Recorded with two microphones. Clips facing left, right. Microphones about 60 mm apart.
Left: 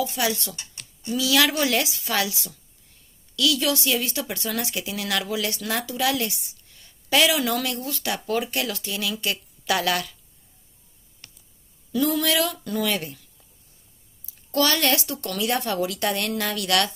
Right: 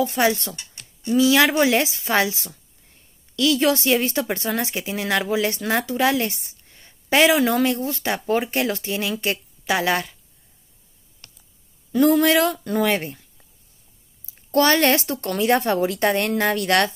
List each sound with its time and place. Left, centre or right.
0.0 s a woman's voice: right
11.9 s a woman's voice: right
14.5 s a woman's voice: right